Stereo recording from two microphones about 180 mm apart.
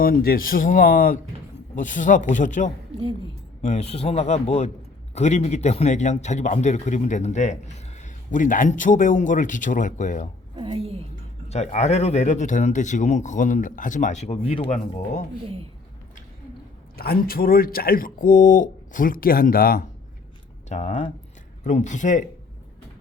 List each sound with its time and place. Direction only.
0.0 s a man's voice: 55° left (ahead or behind)
10.5 s a woman's voice: 30° right (ahead or behind)
11.4 s speech: 35° left (ahead or behind)
17.0 s speech: 55° left (ahead or behind)
20.7 s a man's voice: 40° left (ahead or behind)